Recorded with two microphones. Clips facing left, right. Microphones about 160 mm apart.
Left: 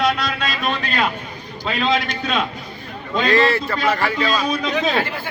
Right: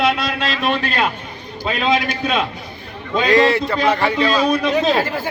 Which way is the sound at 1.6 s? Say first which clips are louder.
Right 2 dB; 10° right (ahead or behind).